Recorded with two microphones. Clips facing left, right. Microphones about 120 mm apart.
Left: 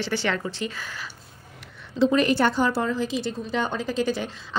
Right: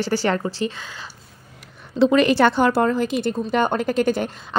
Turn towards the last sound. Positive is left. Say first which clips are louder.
# right 5 dB
turn(degrees=-55)  # may be behind; listen again after turning